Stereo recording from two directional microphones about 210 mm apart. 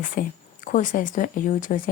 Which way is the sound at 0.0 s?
40° left (ahead or behind).